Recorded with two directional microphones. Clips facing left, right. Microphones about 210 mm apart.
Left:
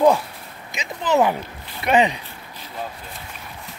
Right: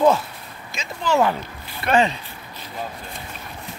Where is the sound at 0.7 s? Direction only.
20° left (ahead or behind).